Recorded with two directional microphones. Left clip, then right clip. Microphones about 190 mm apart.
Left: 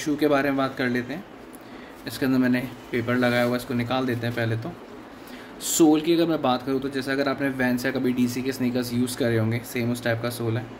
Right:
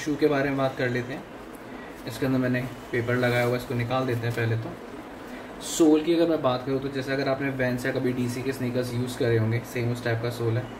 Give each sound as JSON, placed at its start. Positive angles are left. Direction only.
{"t": 0.0, "sound": "speech", "side_deg": 55}
{"t": 2.0, "sound": "speech", "side_deg": 55}
{"t": 5.8, "sound": "speech", "side_deg": 50}